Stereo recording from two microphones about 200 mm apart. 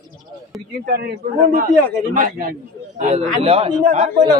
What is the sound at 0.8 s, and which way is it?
A man's voice, 55° right (ahead or behind).